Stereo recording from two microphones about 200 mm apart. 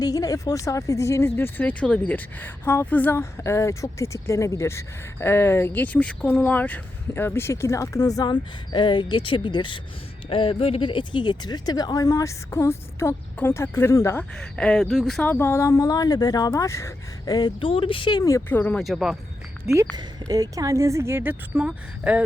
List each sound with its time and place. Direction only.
0.0 s speech: 20° left (ahead or behind); by 19.1 s centre (ahead or behind)
19.7 s speech: 20° right (ahead or behind)